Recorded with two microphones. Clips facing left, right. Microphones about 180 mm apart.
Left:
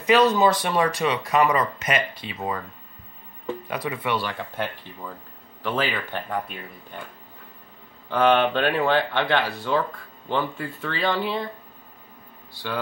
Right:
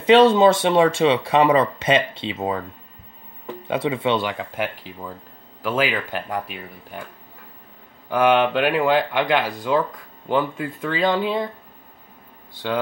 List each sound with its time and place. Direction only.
0.0 s speech: 25° right (ahead or behind)
3.6 s speech: 25° right (ahead or behind)
4.9 s speech: 90° right
5.6 s speech: 10° right (ahead or behind)
8.1 s speech: 10° right (ahead or behind)